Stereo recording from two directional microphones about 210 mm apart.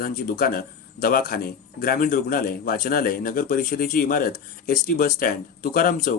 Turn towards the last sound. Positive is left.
turn(degrees=40)  # may be behind; listen again after turning